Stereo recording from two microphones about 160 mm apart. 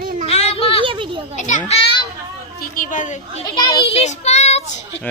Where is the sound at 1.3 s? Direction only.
50° left (ahead or behind).